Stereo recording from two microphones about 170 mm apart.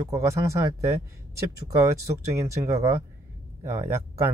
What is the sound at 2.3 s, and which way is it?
Speech, 15° right (ahead or behind).